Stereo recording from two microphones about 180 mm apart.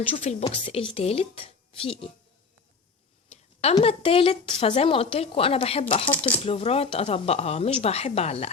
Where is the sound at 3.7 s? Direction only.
30° left (ahead or behind).